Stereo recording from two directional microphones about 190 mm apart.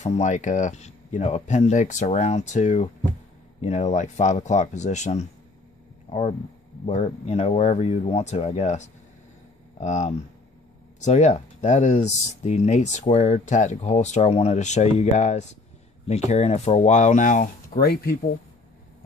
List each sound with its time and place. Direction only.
0.0 s speech: 35° left (ahead or behind); by 18.1 s 55° left (ahead or behind)